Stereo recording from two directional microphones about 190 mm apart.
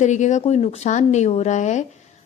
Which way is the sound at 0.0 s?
40° left (ahead or behind).